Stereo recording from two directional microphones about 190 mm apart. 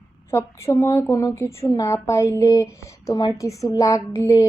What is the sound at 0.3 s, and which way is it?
A child's voice, 15° left (ahead or behind).